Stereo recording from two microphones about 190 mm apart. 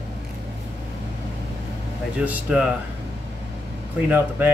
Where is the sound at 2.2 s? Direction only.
10° right (ahead or behind).